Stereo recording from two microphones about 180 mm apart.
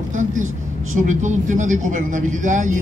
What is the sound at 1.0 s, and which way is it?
Speech, 45° right (ahead or behind).